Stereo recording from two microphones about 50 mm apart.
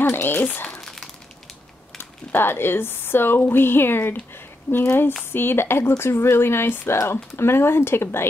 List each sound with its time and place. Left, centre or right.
0.0 s speech: left
0.3 s speech: left
0.7 s crumpling: centre
2.0 s speech: left